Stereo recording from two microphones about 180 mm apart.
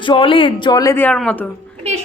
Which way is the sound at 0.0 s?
30° left (ahead or behind).